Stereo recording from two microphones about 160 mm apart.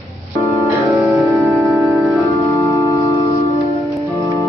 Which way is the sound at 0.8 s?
Centre (ahead or behind).